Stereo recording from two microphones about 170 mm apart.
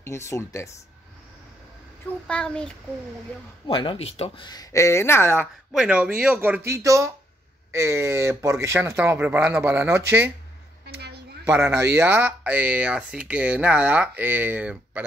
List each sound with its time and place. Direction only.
0.0 s speech: 15° left (ahead or behind)
2.2 s speech: 5° left (ahead or behind)
3.6 s speech: 30° left (ahead or behind)
4.5 s speech: 20° left (ahead or behind)
5.4 s speech: 5° right (ahead or behind)
10.9 s a sound: 70° right (ahead or behind)
11.4 s speech: 15° right (ahead or behind)